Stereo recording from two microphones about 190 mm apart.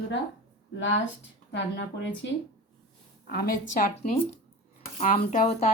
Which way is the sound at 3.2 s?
50° left (ahead or behind).